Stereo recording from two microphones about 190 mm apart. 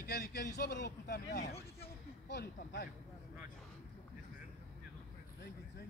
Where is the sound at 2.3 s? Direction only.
60° left (ahead or behind).